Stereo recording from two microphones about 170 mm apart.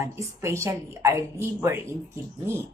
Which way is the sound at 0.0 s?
15° right (ahead or behind).